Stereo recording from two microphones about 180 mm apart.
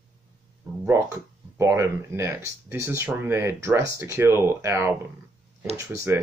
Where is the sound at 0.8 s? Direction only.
15° right (ahead or behind).